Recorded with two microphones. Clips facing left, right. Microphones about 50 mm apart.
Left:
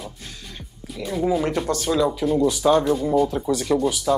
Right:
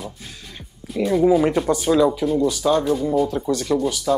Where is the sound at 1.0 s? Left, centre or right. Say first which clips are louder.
Right 6 dB; centre.